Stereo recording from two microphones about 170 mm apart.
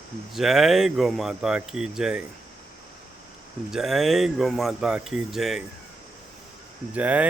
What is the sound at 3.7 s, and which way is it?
Speech, centre (ahead or behind).